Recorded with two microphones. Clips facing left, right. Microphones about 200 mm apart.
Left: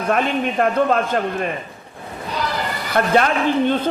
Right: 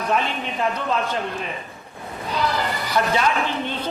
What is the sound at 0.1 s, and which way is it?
A man's voice, 55° left (ahead or behind).